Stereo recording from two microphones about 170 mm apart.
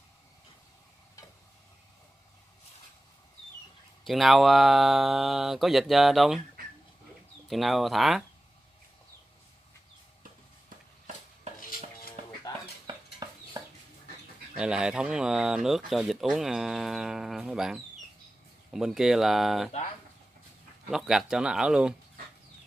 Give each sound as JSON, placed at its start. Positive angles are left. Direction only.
{"t": 4.0, "sound": "speech", "side_deg": 0}
{"t": 7.4, "sound": "speech", "side_deg": 0}
{"t": 11.6, "sound": "dishes", "side_deg": 55}
{"t": 12.8, "sound": "stir", "side_deg": -25}
{"t": 14.6, "sound": "speech", "side_deg": -5}
{"t": 20.9, "sound": "speech", "side_deg": 0}